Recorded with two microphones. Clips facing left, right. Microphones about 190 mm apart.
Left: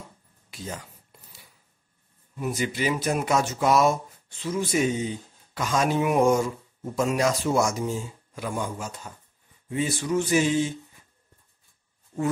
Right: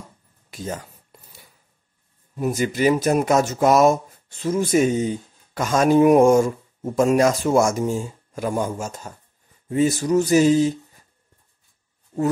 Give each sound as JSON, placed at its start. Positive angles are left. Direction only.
{"t": 0.5, "sound": "speech", "side_deg": -45}
{"t": 2.3, "sound": "speech", "side_deg": -40}
{"t": 9.7, "sound": "a sound", "side_deg": -40}